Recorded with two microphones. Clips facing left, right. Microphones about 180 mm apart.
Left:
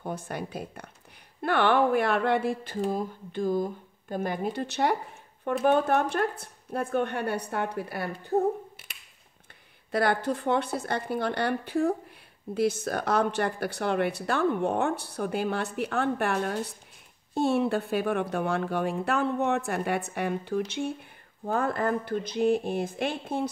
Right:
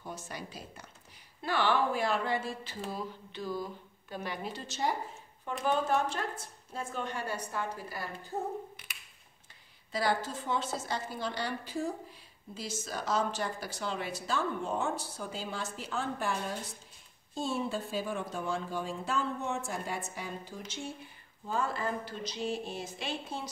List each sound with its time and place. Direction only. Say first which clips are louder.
0.0 s speech: left 8 dB; 55° left (ahead or behind)
9.8 s speech: left 6 dB; 60° left (ahead or behind)